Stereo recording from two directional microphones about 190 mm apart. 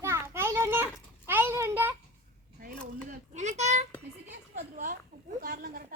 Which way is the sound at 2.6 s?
45° right (ahead or behind).